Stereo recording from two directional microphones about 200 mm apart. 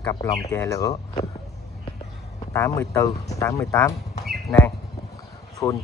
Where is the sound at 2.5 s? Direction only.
15° left (ahead or behind).